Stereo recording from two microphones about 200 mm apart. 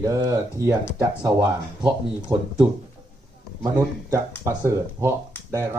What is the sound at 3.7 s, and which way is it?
Speech, 15° right (ahead or behind).